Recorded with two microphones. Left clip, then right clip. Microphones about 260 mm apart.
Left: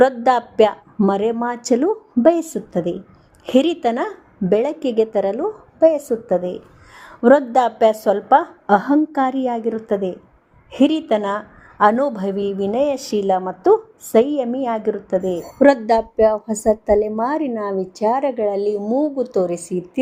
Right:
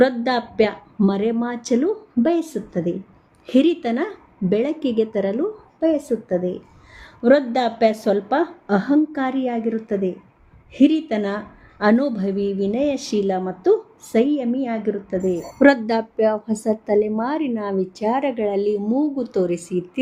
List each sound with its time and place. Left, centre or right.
0.0 s a woman's voice: centre
15.4 s a woman's voice: centre